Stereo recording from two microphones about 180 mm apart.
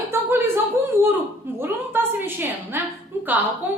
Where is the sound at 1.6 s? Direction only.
10° right (ahead or behind).